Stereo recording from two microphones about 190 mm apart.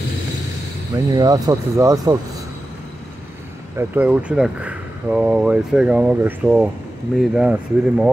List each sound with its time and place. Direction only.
0.9 s speech: 20° right (ahead or behind)
3.7 s speech: 10° right (ahead or behind)